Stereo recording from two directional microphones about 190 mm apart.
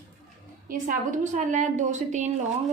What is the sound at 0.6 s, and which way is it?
A woman's voice, 45° right (ahead or behind).